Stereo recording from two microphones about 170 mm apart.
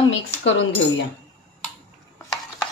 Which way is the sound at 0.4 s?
90° left.